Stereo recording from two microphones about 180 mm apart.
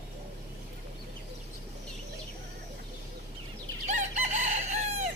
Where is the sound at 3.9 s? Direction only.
40° right (ahead or behind).